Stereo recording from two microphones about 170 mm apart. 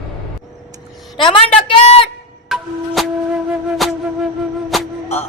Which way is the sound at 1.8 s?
35° left (ahead or behind).